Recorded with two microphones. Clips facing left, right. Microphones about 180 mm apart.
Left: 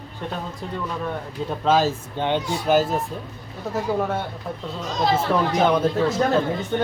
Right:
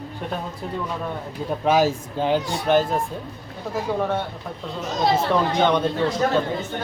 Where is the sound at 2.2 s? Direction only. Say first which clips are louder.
Right 2 dB; 5° right (ahead or behind).